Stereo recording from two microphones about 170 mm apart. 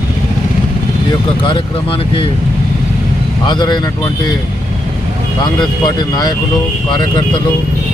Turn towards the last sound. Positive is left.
turn(degrees=25)  # may be behind; listen again after turning